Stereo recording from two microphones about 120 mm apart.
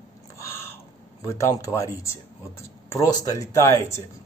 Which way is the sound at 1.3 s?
25° left (ahead or behind).